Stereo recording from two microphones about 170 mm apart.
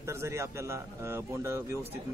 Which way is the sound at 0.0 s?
15° right (ahead or behind).